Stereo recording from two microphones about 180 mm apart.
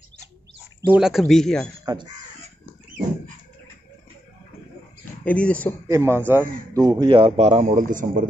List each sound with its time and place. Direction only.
0.9 s speech: centre (ahead or behind)
5.2 s speech: 5° left (ahead or behind)
5.9 s a man's voice: 15° right (ahead or behind); by 8.3 s 45° right (ahead or behind)